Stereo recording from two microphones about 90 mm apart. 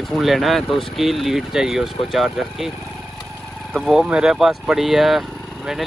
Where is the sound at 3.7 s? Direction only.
Centre (ahead or behind).